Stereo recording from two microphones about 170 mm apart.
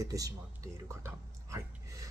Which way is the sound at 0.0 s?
20° right (ahead or behind).